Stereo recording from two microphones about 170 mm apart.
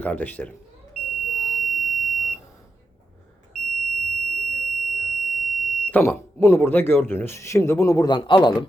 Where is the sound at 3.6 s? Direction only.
Centre (ahead or behind).